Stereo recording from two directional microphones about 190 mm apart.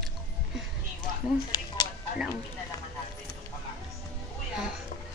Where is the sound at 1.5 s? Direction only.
20° left (ahead or behind).